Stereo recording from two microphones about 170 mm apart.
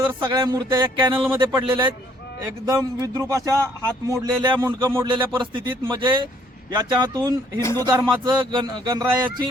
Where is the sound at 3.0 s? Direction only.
20° right (ahead or behind).